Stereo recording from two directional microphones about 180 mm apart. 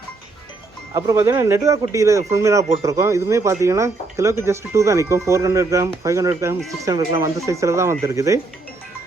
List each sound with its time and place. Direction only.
0.9 s speech: 15° right (ahead or behind)